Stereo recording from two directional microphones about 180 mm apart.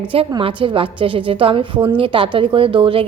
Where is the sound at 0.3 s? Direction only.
30° right (ahead or behind).